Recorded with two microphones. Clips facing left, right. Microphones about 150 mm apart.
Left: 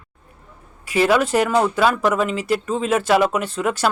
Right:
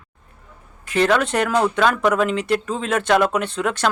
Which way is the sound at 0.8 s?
5° left (ahead or behind).